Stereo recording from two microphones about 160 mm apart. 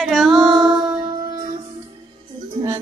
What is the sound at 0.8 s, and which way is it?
Music, 25° right (ahead or behind).